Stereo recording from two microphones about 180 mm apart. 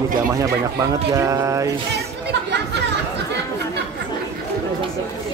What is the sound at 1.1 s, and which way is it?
Speech, 15° right (ahead or behind).